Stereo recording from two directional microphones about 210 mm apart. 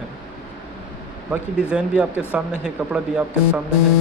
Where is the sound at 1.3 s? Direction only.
5° right (ahead or behind).